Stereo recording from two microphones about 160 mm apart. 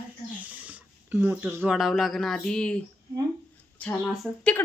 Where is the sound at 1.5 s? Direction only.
5° right (ahead or behind).